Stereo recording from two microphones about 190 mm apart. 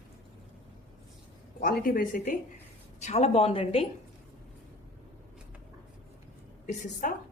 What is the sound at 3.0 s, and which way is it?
Speech, 35° left (ahead or behind).